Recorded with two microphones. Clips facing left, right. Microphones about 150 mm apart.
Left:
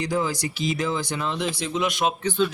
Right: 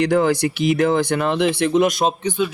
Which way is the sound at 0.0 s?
65° right (ahead or behind).